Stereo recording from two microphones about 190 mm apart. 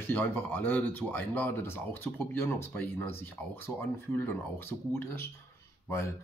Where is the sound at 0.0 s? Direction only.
10° left (ahead or behind).